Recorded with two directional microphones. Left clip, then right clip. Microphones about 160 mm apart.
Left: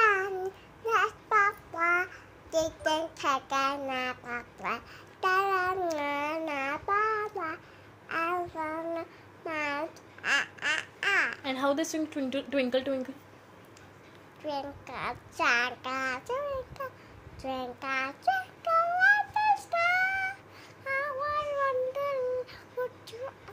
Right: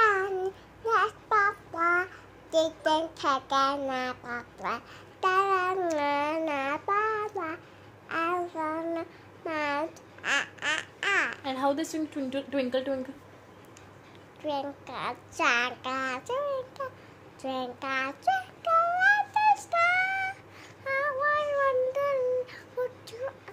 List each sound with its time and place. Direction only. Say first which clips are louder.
0.0 s child singing: right 1 dB; 10° right (ahead or behind)
2.9 s speech: right 2 dB; 10° right (ahead or behind)
8.1 s child singing: right 1 dB; 10° right (ahead or behind)
11.4 s a woman's voice: even; 40° left (ahead or behind)
14.4 s a child's voice: right 3 dB; 10° right (ahead or behind)
17.4 s child singing: right 2 dB; 10° right (ahead or behind)